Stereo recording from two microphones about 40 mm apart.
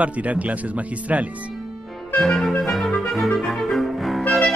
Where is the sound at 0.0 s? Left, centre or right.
Right.